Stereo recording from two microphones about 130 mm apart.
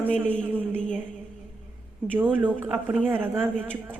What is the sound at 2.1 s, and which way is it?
A woman's voice, 15° right (ahead or behind).